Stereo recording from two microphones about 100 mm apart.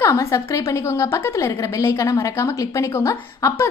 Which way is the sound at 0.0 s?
30° left (ahead or behind).